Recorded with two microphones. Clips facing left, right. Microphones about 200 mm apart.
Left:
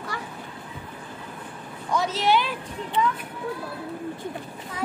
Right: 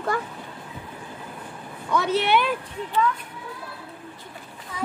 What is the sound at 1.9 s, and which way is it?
Speech, 60° right (ahead or behind).